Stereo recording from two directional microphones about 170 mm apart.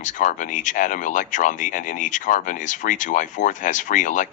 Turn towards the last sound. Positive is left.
turn(degrees=50)  # may be behind; listen again after turning